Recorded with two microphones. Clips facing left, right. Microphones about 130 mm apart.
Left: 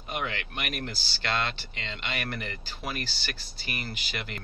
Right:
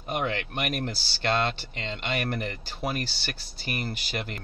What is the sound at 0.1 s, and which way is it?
Speech, 45° right (ahead or behind).